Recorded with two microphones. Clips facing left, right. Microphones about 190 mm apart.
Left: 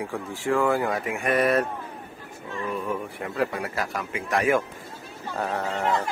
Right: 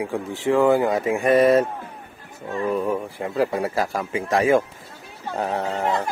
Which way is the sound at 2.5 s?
40° right (ahead or behind).